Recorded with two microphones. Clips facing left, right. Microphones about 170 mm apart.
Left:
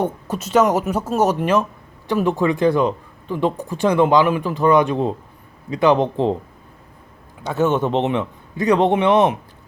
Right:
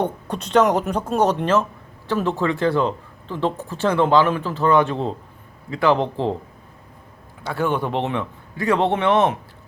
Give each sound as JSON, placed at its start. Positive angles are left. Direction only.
{"t": 0.0, "sound": "speech", "side_deg": 5}
{"t": 7.4, "sound": "speech", "side_deg": 20}